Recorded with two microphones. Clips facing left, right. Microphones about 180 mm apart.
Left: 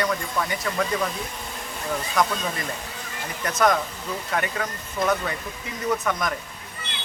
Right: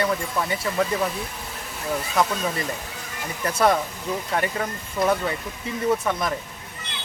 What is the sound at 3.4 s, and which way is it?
Speech, 30° right (ahead or behind).